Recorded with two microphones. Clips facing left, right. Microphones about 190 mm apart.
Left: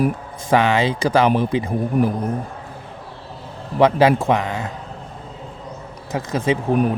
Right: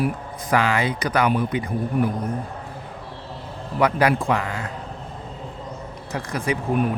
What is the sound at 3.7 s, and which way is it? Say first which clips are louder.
Speech: left 5 dB; 25° left (ahead or behind).